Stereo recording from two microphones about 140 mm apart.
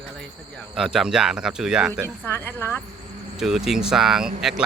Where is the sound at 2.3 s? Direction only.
15° left (ahead or behind).